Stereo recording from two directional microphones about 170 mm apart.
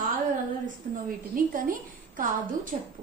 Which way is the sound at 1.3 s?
55° right (ahead or behind).